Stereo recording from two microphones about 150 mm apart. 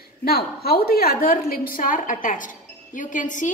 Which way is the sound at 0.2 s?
90° left.